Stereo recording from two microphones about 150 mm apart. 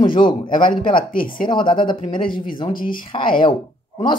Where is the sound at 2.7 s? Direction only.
70° left (ahead or behind).